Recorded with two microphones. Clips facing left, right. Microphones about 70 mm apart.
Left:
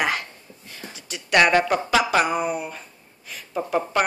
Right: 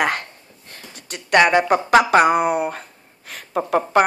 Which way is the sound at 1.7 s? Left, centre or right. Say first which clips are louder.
Right 6 dB; right.